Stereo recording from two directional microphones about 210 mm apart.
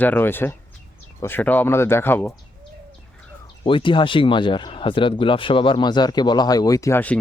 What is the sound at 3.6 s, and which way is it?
Speech, 25° left (ahead or behind).